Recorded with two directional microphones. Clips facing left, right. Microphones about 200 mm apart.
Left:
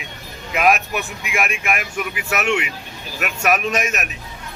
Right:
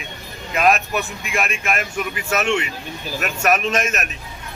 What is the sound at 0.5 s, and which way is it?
Speech, 5° left (ahead or behind).